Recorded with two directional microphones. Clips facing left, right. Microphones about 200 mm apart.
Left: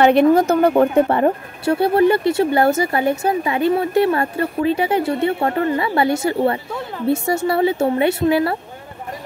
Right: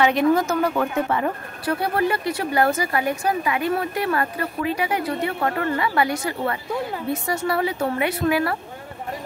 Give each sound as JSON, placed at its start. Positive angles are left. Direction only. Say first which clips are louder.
{"t": 0.0, "sound": "speech", "louder": "left 6 dB", "side_deg": 55}
{"t": 0.3, "sound": "speech", "louder": "left 6 dB", "side_deg": 30}